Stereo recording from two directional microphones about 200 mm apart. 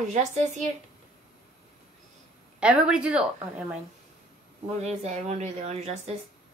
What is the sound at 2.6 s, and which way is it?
A woman's voice, 5° right (ahead or behind).